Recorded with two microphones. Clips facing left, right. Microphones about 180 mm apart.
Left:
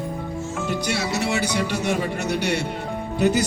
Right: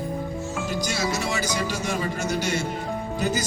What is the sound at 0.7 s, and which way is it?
Speech, 65° left (ahead or behind).